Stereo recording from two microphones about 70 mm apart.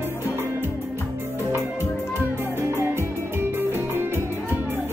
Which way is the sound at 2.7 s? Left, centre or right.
Right.